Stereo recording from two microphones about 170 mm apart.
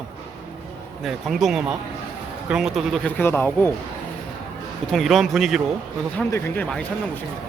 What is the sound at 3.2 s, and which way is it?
Speech, 10° left (ahead or behind).